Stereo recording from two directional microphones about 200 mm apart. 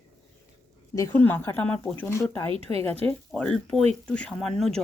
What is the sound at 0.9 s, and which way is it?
Speech, 15° left (ahead or behind).